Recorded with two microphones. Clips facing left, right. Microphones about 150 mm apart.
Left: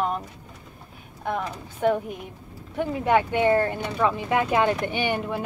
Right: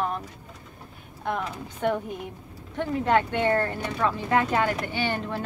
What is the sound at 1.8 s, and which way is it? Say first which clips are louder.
Speech: left 3 dB; 5° left (ahead or behind).